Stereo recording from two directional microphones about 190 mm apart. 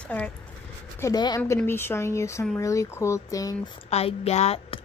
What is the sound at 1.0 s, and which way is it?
A woman's voice, 20° left (ahead or behind).